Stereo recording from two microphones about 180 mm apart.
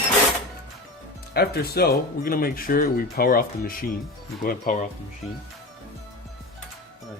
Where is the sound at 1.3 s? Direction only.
60° left (ahead or behind).